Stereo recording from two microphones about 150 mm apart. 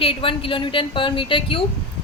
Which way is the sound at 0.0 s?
35° left (ahead or behind).